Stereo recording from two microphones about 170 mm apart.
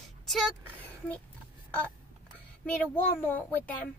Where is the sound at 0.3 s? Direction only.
Centre (ahead or behind).